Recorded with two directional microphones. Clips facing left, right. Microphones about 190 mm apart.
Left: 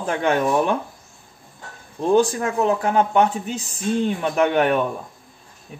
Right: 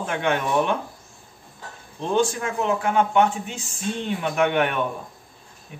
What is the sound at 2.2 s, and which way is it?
A man's voice, 40° left (ahead or behind).